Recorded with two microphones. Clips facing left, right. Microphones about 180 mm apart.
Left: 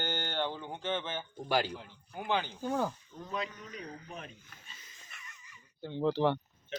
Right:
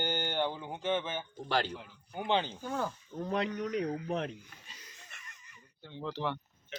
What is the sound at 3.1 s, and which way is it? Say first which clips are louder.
Speech: right 6 dB; 60° right (ahead or behind).